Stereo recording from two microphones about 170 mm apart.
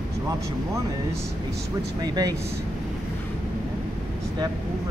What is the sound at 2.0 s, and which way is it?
Speech, 25° right (ahead or behind).